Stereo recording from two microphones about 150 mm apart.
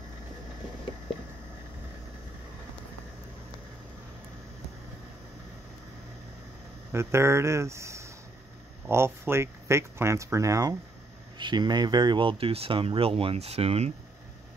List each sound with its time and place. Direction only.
6.9 s speech: 15° right (ahead or behind); by 13.9 s 45° right (ahead or behind)